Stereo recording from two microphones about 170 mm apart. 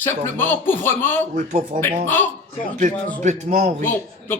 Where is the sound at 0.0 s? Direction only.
10° left (ahead or behind).